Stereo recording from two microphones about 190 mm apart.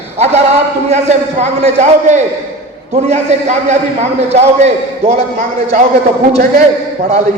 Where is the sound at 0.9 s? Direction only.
35° right (ahead or behind).